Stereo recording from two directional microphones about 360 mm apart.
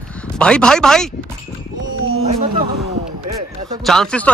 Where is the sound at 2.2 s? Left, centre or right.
Centre.